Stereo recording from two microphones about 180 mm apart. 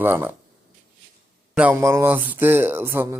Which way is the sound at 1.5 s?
10° right (ahead or behind).